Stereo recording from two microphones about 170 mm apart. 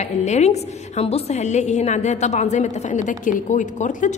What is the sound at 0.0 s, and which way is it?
A woman's voice, 40° left (ahead or behind).